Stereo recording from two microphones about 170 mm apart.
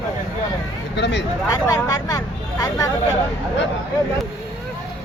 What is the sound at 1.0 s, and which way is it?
Speech, 90° left.